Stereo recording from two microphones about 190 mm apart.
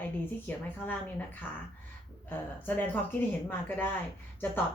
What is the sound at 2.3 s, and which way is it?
A woman's voice, 10° left (ahead or behind).